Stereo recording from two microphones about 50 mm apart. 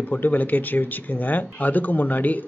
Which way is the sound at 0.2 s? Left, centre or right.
Left.